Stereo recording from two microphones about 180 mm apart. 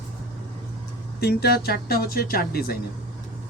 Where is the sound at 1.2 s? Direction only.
60° left (ahead or behind).